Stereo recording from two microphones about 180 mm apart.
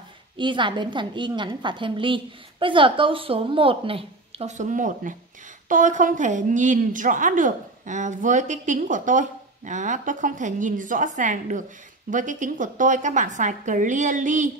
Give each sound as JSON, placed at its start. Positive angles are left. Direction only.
{"t": 0.4, "sound": "a woman's voice", "side_deg": -25}